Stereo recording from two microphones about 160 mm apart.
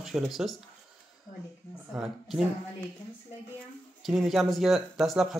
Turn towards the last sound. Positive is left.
turn(degrees=0)  # may be behind; listen again after turning